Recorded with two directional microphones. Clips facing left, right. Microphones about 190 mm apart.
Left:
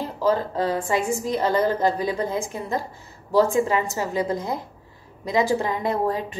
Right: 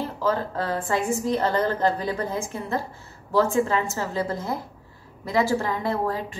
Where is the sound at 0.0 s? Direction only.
15° left (ahead or behind).